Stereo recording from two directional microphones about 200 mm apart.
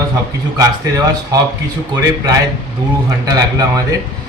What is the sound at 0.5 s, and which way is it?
Speech, 15° right (ahead or behind).